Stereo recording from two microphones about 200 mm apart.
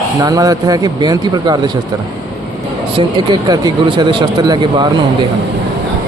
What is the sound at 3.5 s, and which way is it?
Speech, 20° right (ahead or behind).